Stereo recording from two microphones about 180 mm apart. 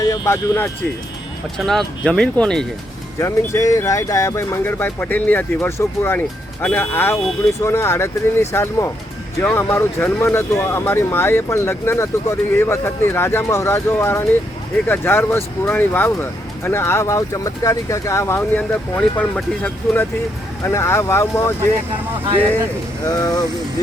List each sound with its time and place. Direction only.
0.0 s speech: 15° left (ahead or behind)
1.5 s speech: centre (ahead or behind)
3.2 s speech: 15° left (ahead or behind)
23.0 s speech: 20° left (ahead or behind)